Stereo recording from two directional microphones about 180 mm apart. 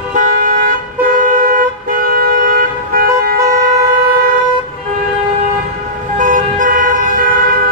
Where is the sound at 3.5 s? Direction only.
55° right (ahead or behind).